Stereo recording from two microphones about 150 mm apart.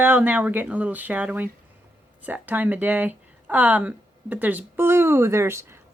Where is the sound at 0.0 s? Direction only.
10° right (ahead or behind).